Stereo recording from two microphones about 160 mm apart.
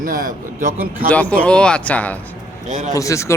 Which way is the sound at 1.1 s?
10° left (ahead or behind).